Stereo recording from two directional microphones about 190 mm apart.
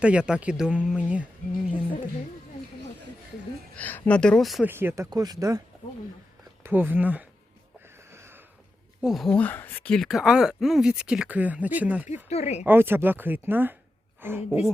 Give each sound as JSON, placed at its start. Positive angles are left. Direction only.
{"t": 0.0, "sound": "speech", "side_deg": -5}
{"t": 3.8, "sound": "speech", "side_deg": 10}
{"t": 4.7, "sound": "a woman's voice", "side_deg": -10}
{"t": 7.9, "sound": "a sound", "side_deg": -15}
{"t": 9.0, "sound": "speech", "side_deg": 0}
{"t": 12.3, "sound": "speech", "side_deg": 35}
{"t": 12.6, "sound": "a woman's voice", "side_deg": -10}